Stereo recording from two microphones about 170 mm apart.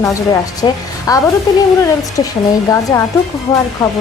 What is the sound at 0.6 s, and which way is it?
A woman's voice, 20° left (ahead or behind).